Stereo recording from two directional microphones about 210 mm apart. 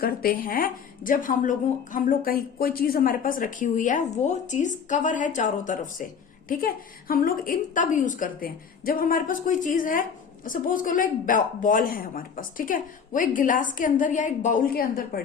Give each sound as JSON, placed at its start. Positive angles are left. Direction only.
{"t": 0.0, "sound": "a woman's voice", "side_deg": 45}